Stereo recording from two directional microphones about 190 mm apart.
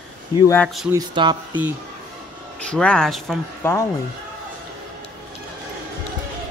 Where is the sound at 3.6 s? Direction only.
10° left (ahead or behind).